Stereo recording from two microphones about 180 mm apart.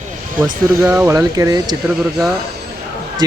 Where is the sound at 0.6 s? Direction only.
10° right (ahead or behind).